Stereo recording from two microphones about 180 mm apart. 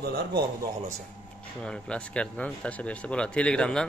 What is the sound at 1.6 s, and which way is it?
Speech, 5° left (ahead or behind).